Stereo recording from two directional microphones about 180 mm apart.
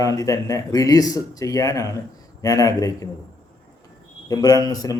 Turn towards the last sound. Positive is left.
turn(degrees=20)  # may be behind; listen again after turning